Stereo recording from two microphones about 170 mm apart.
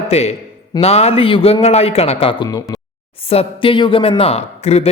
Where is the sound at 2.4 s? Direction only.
20° left (ahead or behind).